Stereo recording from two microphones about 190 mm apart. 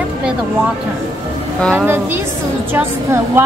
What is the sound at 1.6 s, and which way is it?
Speech, 5° left (ahead or behind).